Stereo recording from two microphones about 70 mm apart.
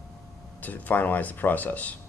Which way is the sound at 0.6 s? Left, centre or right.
Left.